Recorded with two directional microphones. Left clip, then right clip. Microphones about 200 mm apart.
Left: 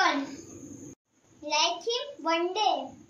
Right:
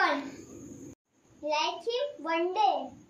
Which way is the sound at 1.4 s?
15° right (ahead or behind).